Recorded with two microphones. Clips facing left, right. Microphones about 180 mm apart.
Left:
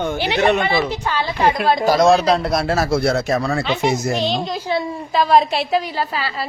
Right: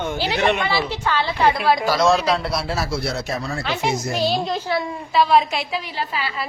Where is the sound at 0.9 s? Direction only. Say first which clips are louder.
Left 1 dB; 15° left (ahead or behind).